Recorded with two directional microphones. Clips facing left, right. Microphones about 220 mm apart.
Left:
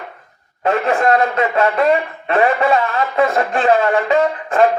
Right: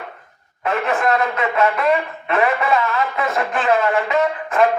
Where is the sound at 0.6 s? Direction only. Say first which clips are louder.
Left 4 dB; 30° left (ahead or behind).